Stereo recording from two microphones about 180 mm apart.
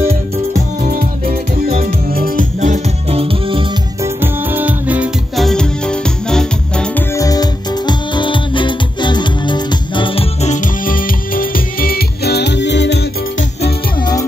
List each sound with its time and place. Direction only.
0.1 s music: 50° right (ahead or behind); by 3.6 s 30° right (ahead or behind)
4.0 s music: 10° right (ahead or behind); by 6.9 s 5° left (ahead or behind)
7.2 s music: 20° left (ahead or behind); by 13.0 s 75° left (ahead or behind)